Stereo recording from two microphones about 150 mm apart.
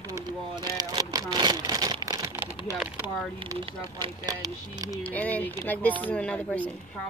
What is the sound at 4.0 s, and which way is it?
Speech, 25° right (ahead or behind).